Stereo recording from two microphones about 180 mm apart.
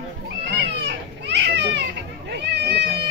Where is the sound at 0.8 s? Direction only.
70° right (ahead or behind).